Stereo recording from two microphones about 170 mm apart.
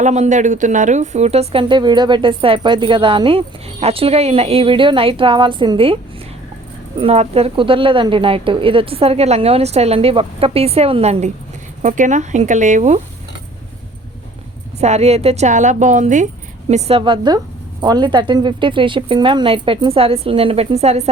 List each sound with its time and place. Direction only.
0.0 s a woman's voice: 45° right (ahead or behind)
7.0 s a woman's voice: 35° right (ahead or behind)
14.8 s a woman's voice: 40° right (ahead or behind)
17.0 s speech: 25° right (ahead or behind)